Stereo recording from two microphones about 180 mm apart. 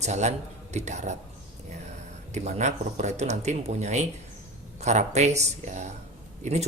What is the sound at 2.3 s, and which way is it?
Speech, 40° right (ahead or behind).